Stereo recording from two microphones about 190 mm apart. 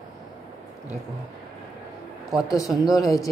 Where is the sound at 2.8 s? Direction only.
20° left (ahead or behind).